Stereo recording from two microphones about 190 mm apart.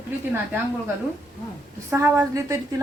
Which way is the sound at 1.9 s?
15° right (ahead or behind).